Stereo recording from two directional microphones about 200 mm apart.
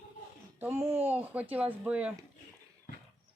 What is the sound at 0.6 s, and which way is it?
Speech, 10° right (ahead or behind).